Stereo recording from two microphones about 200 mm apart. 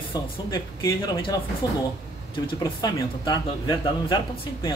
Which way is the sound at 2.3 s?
25° left (ahead or behind).